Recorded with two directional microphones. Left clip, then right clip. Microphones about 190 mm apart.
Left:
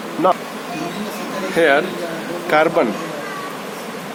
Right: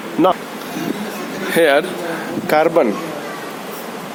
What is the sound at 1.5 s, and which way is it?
Speech, 65° right (ahead or behind).